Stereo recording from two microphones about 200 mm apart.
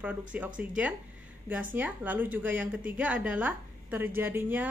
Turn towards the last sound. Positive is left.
turn(degrees=-10)  # may be behind; listen again after turning